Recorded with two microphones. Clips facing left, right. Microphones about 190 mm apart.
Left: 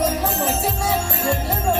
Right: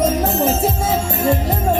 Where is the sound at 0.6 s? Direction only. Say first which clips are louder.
Right 4 dB; 20° right (ahead or behind).